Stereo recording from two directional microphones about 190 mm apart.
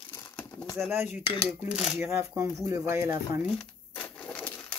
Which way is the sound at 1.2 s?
25° left (ahead or behind).